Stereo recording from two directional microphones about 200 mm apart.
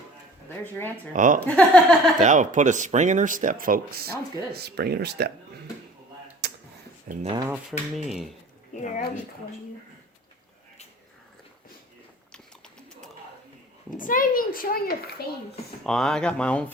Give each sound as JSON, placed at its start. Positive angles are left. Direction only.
{"t": 0.4, "sound": "speech", "side_deg": 10}
{"t": 1.1, "sound": "speech", "side_deg": -40}
{"t": 1.5, "sound": "speech", "side_deg": 5}
{"t": 2.1, "sound": "speech", "side_deg": -40}
{"t": 6.4, "sound": "a sound", "side_deg": -55}
{"t": 7.3, "sound": "speech", "side_deg": -10}
{"t": 7.7, "sound": "speech", "side_deg": 0}
{"t": 8.7, "sound": "speech", "side_deg": 40}
{"t": 13.9, "sound": "a child's voice", "side_deg": 45}
{"t": 15.8, "sound": "speech", "side_deg": 5}